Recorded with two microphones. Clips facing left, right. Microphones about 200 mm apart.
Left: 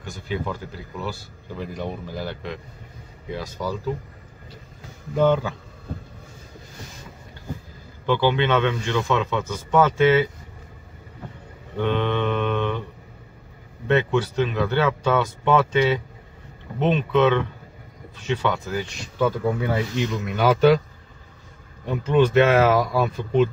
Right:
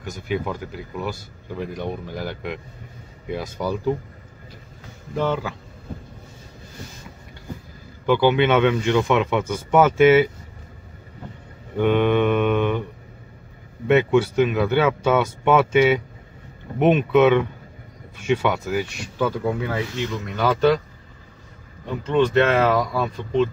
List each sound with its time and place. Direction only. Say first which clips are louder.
0.3 s speech: right 2 dB; 10° right (ahead or behind)
5.2 s speech: left 5 dB; 5° right (ahead or behind)
8.1 s speech: right 3 dB; 10° right (ahead or behind)
11.7 s mantra: right 5 dB; 10° right (ahead or behind)
13.8 s speech: right 4 dB; 10° right (ahead or behind)
20.0 s speech: left 1 dB; 15° left (ahead or behind)
22.0 s speech: left 1 dB; 10° left (ahead or behind)